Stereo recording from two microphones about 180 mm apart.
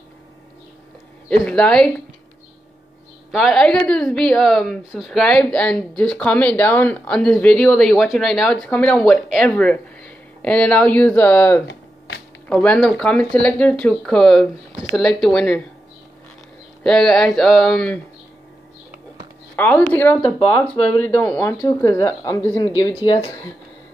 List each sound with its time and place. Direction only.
1.4 s a woman's voice: 5° left (ahead or behind)
3.3 s a woman's voice: centre (ahead or behind)
16.8 s a woman's voice: centre (ahead or behind)
19.5 s speech: 10° left (ahead or behind)
23.0 s speech: 30° left (ahead or behind)